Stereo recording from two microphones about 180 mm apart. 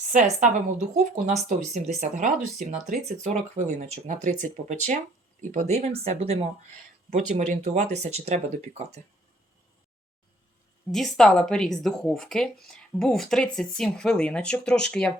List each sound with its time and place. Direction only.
0.1 s speech: 40° right (ahead or behind)
10.9 s speech: centre (ahead or behind)